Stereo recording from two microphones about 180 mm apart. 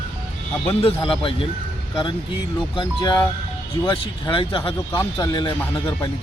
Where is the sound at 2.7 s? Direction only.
25° left (ahead or behind).